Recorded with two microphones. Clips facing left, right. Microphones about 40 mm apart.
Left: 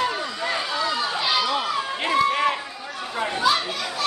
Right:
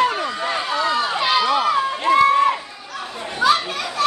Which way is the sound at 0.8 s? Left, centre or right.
Right.